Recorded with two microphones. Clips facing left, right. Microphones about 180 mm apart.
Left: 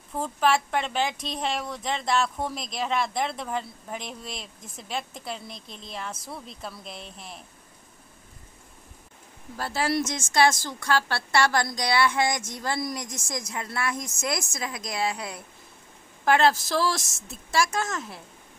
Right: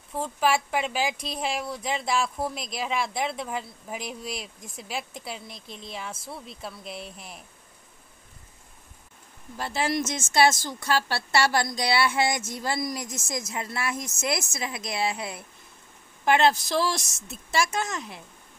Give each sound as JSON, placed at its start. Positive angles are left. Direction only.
{"t": 0.2, "sound": "speech", "side_deg": -5}
{"t": 9.6, "sound": "speech", "side_deg": -20}
{"t": 10.0, "sound": "speech", "side_deg": -5}
{"t": 13.5, "sound": "speech", "side_deg": -25}
{"t": 13.7, "sound": "speech", "side_deg": -5}
{"t": 16.3, "sound": "speech", "side_deg": -20}
{"t": 17.0, "sound": "speech", "side_deg": 0}